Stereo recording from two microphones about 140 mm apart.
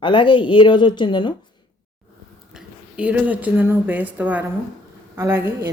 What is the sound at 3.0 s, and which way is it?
A woman's voice, 10° right (ahead or behind).